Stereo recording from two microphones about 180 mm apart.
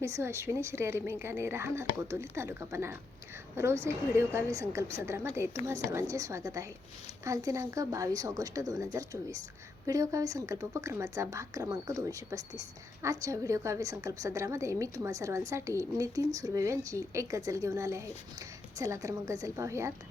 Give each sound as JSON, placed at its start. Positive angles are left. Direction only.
{"t": 0.0, "sound": "a woman's voice", "side_deg": -15}